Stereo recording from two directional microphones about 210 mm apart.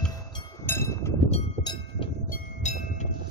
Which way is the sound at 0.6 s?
10° left (ahead or behind).